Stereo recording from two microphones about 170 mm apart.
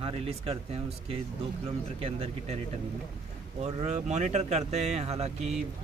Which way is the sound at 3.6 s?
40° right (ahead or behind).